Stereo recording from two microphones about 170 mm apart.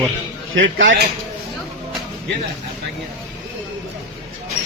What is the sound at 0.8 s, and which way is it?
Speech, 90° right.